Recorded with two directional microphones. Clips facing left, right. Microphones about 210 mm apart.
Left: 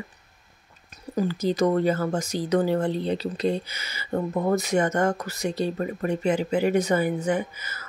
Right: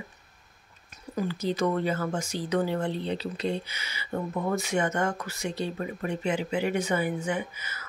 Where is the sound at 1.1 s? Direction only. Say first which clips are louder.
Left 5 dB; 40° left (ahead or behind).